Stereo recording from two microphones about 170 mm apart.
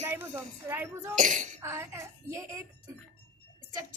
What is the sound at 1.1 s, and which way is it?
Speech, 50° right (ahead or behind).